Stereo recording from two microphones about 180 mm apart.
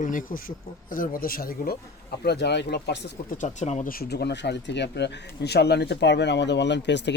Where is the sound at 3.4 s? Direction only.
40° left (ahead or behind); by 7.1 s 75° left (ahead or behind).